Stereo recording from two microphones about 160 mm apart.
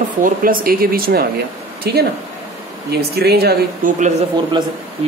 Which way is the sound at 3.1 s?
85° right.